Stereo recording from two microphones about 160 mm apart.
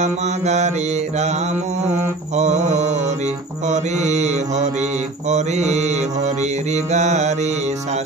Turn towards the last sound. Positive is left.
turn(degrees=-45)  # may be behind; listen again after turning